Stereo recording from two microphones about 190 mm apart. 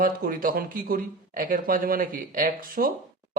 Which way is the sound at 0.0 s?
50° right (ahead or behind).